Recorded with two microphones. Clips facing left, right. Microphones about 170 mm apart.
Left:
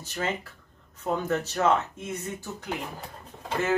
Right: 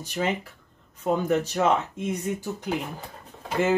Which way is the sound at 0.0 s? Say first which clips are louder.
Right 4 dB; 15° right (ahead or behind).